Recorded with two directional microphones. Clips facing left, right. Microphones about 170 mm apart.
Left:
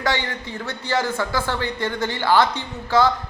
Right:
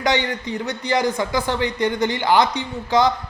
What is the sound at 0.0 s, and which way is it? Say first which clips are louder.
A man's voice: right 3 dB; 20° right (ahead or behind).